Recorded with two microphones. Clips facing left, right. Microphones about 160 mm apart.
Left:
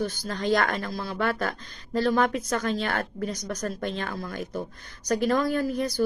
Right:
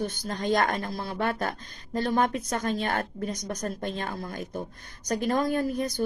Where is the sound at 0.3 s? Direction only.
40° right (ahead or behind).